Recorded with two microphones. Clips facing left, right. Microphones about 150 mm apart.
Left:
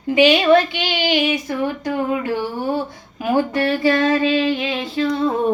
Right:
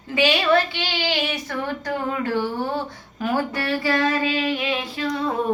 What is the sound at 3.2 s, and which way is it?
Female singing, 25° left (ahead or behind).